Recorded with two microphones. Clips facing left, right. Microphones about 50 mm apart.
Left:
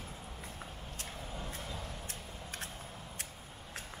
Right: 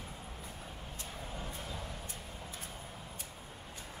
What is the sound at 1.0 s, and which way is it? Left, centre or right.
Vehicle, centre.